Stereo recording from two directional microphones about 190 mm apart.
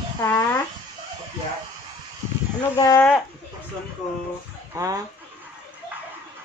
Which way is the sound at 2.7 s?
15° left (ahead or behind).